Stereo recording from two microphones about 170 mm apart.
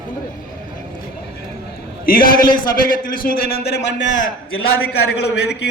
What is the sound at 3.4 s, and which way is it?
Speech, 75° left (ahead or behind).